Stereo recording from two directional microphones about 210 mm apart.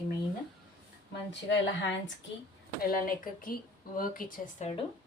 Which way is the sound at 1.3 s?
60° left (ahead or behind).